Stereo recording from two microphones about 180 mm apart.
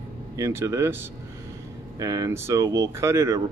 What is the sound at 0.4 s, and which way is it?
Speech, 15° right (ahead or behind).